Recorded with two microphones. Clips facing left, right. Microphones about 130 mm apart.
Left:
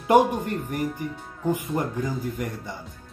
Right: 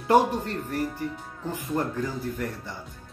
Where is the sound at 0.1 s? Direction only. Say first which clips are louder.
Left 2 dB; 15° left (ahead or behind).